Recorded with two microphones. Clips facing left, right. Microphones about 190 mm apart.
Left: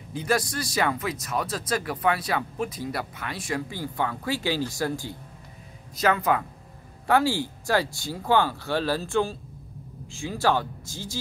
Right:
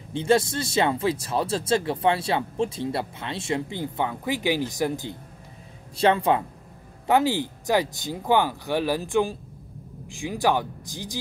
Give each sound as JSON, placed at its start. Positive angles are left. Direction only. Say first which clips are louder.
{"t": 0.1, "sound": "speech", "louder": "right 5 dB", "side_deg": -25}